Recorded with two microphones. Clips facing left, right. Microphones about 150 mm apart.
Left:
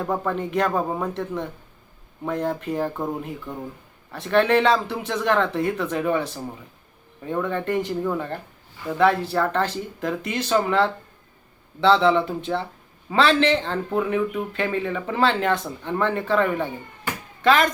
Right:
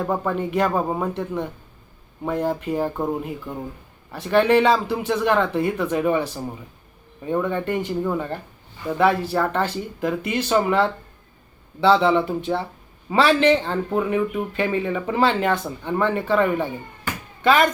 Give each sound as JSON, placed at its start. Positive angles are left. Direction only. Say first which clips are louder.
{"t": 0.0, "sound": "speech", "louder": "right 2 dB", "side_deg": -5}